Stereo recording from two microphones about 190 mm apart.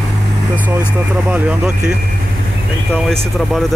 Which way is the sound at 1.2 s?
10° right (ahead or behind).